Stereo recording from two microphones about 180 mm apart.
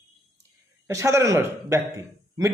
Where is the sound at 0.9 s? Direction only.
15° right (ahead or behind).